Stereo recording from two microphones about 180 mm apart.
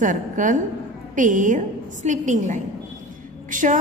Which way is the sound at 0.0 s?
45° right (ahead or behind).